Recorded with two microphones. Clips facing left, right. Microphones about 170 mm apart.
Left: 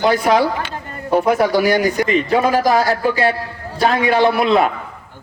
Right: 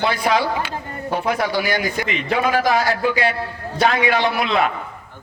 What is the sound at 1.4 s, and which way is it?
A man's voice, 40° left (ahead or behind).